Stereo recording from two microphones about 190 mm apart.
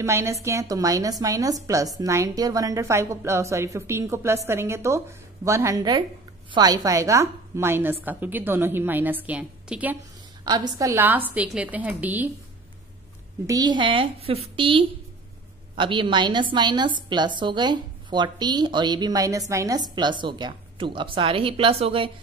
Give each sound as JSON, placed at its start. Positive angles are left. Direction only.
{"t": 0.0, "sound": "a woman's voice", "side_deg": -15}
{"t": 10.4, "sound": "a woman's voice", "side_deg": -20}
{"t": 13.5, "sound": "a woman's voice", "side_deg": -20}